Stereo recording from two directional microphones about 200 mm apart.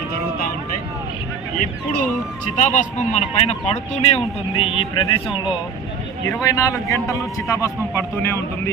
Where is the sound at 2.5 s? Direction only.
35° left (ahead or behind).